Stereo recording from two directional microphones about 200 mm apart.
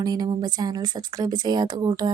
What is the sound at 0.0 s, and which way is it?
Speech, 20° right (ahead or behind).